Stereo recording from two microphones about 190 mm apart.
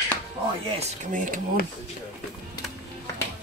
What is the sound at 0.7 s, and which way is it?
Speech, 45° right (ahead or behind).